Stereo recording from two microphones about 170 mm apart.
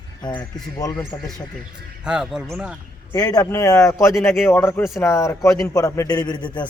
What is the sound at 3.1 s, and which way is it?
A man's voice, 20° left (ahead or behind).